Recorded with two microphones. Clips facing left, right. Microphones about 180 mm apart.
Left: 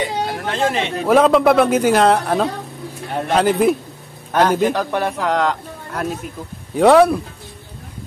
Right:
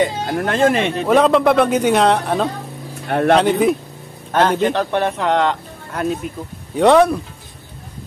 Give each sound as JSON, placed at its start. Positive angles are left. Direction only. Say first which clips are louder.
{"t": 0.0, "sound": "speech", "louder": "right 4 dB", "side_deg": -50}
{"t": 0.9, "sound": "speech", "louder": "even", "side_deg": 0}
{"t": 3.1, "sound": "speech", "louder": "right 8 dB", "side_deg": -65}
{"t": 3.3, "sound": "speech", "louder": "even", "side_deg": 0}
{"t": 6.7, "sound": "speech", "louder": "left 1 dB", "side_deg": 5}